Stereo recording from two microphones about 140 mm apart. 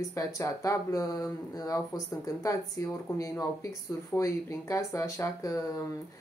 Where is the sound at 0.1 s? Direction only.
20° left (ahead or behind).